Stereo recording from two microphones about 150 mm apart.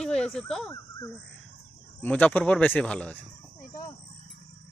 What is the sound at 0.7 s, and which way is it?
Speech, 20° left (ahead or behind).